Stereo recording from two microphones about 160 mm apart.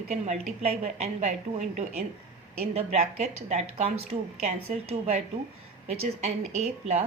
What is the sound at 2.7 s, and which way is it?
Speech, 45° right (ahead or behind).